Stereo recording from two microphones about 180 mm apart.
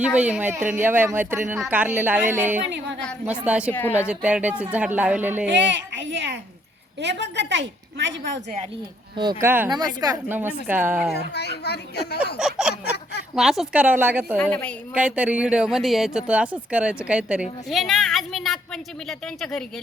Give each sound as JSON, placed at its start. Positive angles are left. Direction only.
{"t": 0.0, "sound": "speech", "side_deg": -5}
{"t": 3.7, "sound": "a woman's voice", "side_deg": 10}
{"t": 4.0, "sound": "speech", "side_deg": -5}
{"t": 5.5, "sound": "speech", "side_deg": -90}
{"t": 7.0, "sound": "a woman's voice", "side_deg": -70}
{"t": 9.1, "sound": "speech", "side_deg": -25}
{"t": 11.1, "sound": "speech", "side_deg": 65}
{"t": 12.4, "sound": "a woman's voice", "side_deg": -5}
{"t": 14.3, "sound": "a woman's voice", "side_deg": 10}
{"t": 14.9, "sound": "a woman's voice", "side_deg": -5}